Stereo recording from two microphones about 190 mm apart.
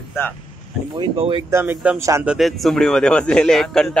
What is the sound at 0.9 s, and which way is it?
Speech, 25° right (ahead or behind).